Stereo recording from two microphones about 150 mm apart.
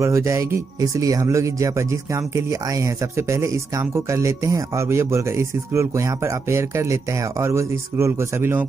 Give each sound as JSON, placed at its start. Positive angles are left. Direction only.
{"t": 0.0, "sound": "speech", "side_deg": -20}